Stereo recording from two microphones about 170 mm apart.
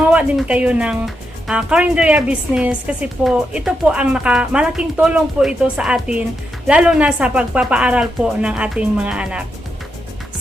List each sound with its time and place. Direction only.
0.0 s speech: 10° right (ahead or behind)